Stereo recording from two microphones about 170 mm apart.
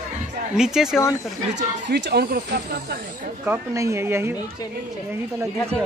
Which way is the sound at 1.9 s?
70° right (ahead or behind).